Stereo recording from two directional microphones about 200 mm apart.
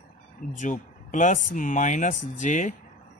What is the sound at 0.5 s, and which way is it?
Speech, 40° left (ahead or behind).